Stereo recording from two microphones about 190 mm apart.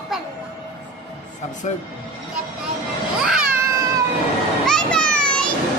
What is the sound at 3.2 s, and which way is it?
Cat, 5° right (ahead or behind).